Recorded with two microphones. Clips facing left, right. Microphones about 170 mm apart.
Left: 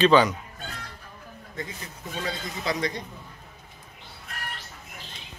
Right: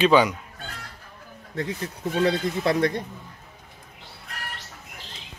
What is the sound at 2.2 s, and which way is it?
Speech, 60° right (ahead or behind).